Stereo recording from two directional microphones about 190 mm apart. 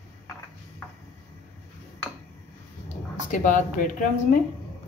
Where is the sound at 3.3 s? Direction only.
40° left (ahead or behind).